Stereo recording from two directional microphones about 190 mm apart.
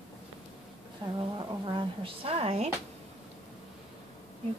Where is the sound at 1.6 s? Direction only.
25° right (ahead or behind).